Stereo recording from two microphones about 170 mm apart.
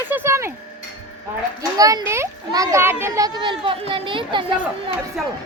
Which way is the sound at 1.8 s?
20° right (ahead or behind).